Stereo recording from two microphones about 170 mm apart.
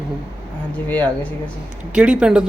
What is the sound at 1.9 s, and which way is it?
Speech, 5° right (ahead or behind).